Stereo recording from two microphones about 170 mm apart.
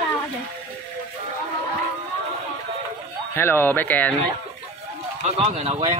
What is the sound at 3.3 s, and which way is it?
Speech, 15° left (ahead or behind).